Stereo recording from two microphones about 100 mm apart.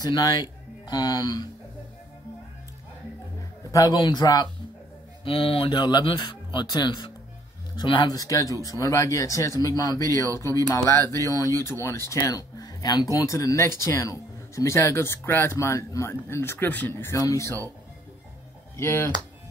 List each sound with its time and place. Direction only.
0.0 s speech: 40° left (ahead or behind)
3.9 s speech: 50° left (ahead or behind)
5.2 s speech: 65° left (ahead or behind); by 17.1 s 20° left (ahead or behind)
17.1 s speech: 30° left (ahead or behind)
18.8 s speech: 25° left (ahead or behind)